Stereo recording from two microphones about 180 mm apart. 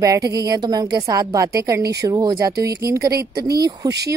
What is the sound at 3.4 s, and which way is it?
Speech, 60° right (ahead or behind).